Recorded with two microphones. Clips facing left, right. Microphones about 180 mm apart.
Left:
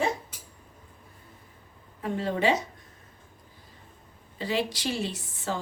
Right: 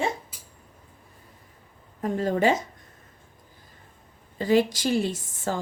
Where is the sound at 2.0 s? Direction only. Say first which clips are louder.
Right 4 dB; 45° right (ahead or behind).